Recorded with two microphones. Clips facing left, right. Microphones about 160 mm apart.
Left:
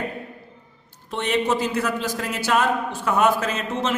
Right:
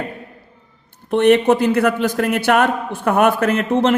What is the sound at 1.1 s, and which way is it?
A man's voice, 55° right (ahead or behind).